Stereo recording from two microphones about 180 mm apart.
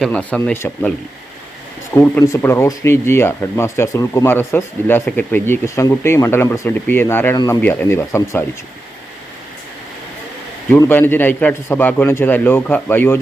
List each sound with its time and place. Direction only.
0.0 s speech: 5° left (ahead or behind)
2.0 s speech: 15° left (ahead or behind)
7.6 s speech: 10° left (ahead or behind)
10.7 s speech: 10° left (ahead or behind)